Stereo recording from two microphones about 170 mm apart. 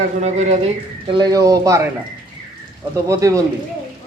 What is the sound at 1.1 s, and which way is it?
Speech, 20° right (ahead or behind).